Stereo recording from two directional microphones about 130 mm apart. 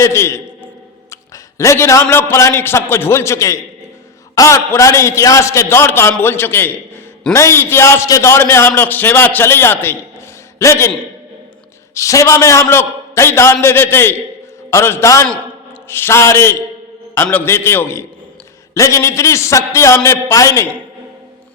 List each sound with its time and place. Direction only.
0.0 s a man's voice: 20° left (ahead or behind)
11.9 s a man's voice: 25° left (ahead or behind)